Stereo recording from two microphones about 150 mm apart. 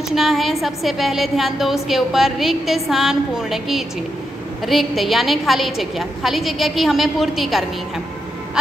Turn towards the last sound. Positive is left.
turn(degrees=0)  # may be behind; listen again after turning